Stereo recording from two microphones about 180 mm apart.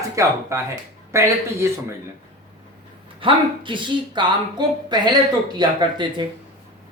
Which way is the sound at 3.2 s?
25° right (ahead or behind).